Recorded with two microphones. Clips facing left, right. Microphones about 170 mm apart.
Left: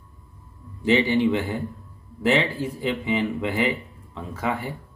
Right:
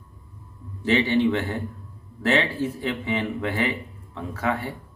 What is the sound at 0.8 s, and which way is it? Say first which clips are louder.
Speech: left 1 dB; 15° left (ahead or behind).